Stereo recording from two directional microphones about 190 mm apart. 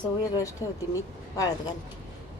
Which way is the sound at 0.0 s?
15° left (ahead or behind).